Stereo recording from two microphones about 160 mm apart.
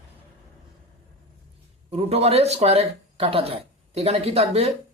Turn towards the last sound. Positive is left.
turn(degrees=-40)  # may be behind; listen again after turning